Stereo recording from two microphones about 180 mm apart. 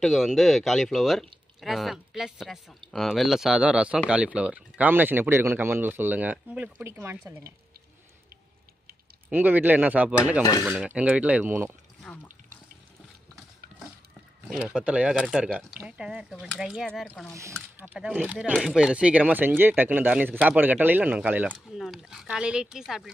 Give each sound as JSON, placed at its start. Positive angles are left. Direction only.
{"t": 0.0, "sound": "speech", "side_deg": 0}
{"t": 9.3, "sound": "speech", "side_deg": -10}
{"t": 12.1, "sound": "water", "side_deg": 5}
{"t": 14.5, "sound": "speech", "side_deg": -5}
{"t": 17.3, "sound": "speech", "side_deg": -15}
{"t": 17.6, "sound": "speech", "side_deg": -5}